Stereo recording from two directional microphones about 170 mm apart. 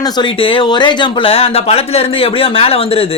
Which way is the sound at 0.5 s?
30° left (ahead or behind).